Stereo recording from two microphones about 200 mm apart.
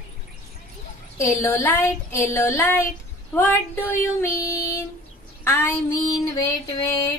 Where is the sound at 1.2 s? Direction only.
15° left (ahead or behind).